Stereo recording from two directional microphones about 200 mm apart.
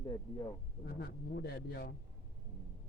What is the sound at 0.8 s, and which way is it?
Speech, 55° left (ahead or behind).